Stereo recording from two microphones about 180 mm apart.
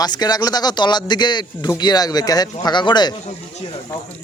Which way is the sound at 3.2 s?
35° left (ahead or behind).